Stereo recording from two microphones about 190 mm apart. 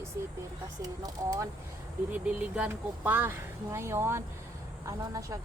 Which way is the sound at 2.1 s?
5° right (ahead or behind).